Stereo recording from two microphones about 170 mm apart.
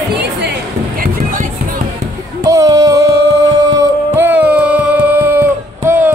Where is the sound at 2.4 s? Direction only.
20° right (ahead or behind).